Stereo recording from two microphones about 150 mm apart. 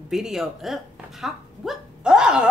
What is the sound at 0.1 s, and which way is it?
Speech, 5° right (ahead or behind).